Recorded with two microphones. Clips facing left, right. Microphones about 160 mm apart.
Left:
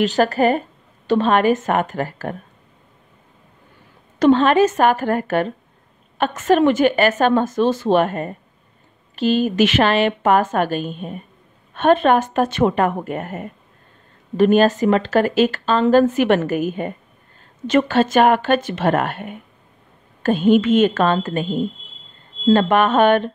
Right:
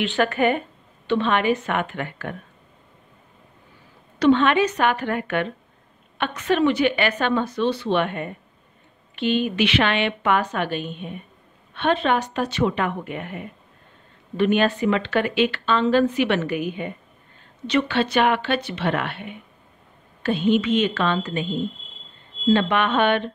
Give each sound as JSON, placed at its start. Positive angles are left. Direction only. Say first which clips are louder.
{"t": 0.0, "sound": "speech", "louder": "left 4 dB", "side_deg": 40}
{"t": 4.2, "sound": "a woman's voice", "louder": "left 4 dB", "side_deg": 40}